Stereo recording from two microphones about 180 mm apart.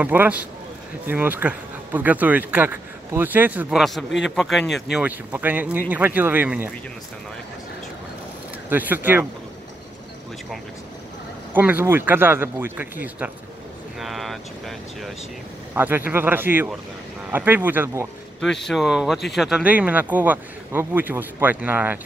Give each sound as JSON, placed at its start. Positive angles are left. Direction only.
{"t": 0.0, "sound": "speech", "side_deg": -10}
{"t": 4.2, "sound": "speech", "side_deg": 0}
{"t": 8.6, "sound": "speech", "side_deg": -10}
{"t": 11.5, "sound": "speech", "side_deg": -10}
{"t": 15.7, "sound": "speech", "side_deg": -10}
{"t": 18.7, "sound": "speech", "side_deg": 0}